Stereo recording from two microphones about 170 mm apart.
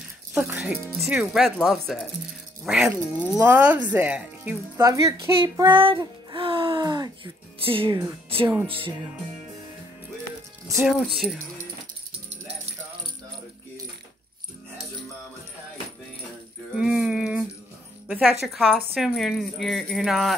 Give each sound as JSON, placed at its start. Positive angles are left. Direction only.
{"t": 0.3, "sound": "speech", "side_deg": -5}
{"t": 10.8, "sound": "speech", "side_deg": -5}
{"t": 16.7, "sound": "a sound", "side_deg": -5}
{"t": 18.0, "sound": "speech", "side_deg": -5}